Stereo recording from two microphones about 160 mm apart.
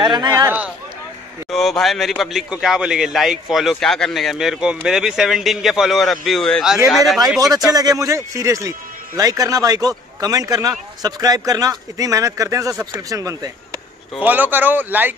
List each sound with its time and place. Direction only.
0.1 s speech: 25° right (ahead or behind)
1.5 s a man's voice: centre (ahead or behind)
7.2 s speech: 20° right (ahead or behind)